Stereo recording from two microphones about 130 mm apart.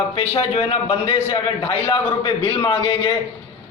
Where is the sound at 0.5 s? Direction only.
50° left (ahead or behind).